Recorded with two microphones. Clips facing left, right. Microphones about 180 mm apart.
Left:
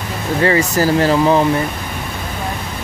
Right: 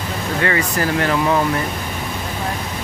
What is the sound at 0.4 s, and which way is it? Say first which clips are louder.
Speech: left 6 dB; 30° left (ahead or behind).